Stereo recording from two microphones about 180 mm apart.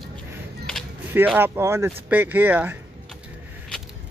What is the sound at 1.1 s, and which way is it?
Speech, 10° right (ahead or behind).